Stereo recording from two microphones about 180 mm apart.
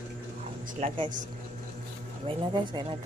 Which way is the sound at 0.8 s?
35° right (ahead or behind).